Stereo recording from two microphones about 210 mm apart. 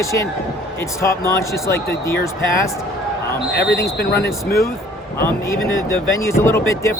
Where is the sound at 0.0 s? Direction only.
15° left (ahead or behind).